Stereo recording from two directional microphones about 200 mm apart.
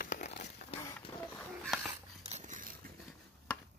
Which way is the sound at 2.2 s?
35° right (ahead or behind).